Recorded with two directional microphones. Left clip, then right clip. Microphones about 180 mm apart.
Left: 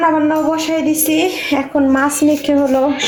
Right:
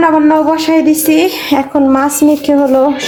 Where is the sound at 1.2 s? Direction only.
20° right (ahead or behind).